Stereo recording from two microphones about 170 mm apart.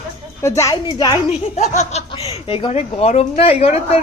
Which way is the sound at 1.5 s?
45° left (ahead or behind).